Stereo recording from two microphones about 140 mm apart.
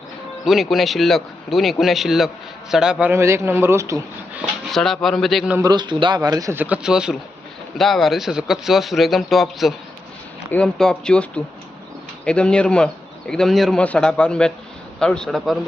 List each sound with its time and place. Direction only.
0.4 s a man's voice: centre (ahead or behind)
3.1 s speech: 20° right (ahead or behind)
4.7 s a man's voice: centre (ahead or behind)
5.5 s speech: 30° right (ahead or behind)
6.6 s a man's voice: 5° right (ahead or behind)